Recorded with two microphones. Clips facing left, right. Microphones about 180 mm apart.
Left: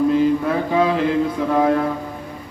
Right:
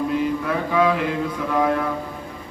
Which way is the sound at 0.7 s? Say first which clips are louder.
Left 1 dB; 25° left (ahead or behind).